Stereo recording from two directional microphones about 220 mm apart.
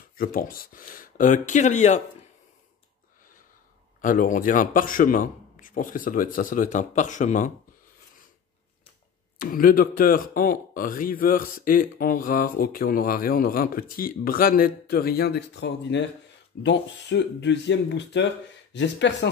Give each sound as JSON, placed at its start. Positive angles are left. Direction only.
{"t": 0.2, "sound": "speech", "side_deg": 40}
{"t": 4.0, "sound": "speech", "side_deg": 35}
{"t": 9.4, "sound": "speech", "side_deg": 40}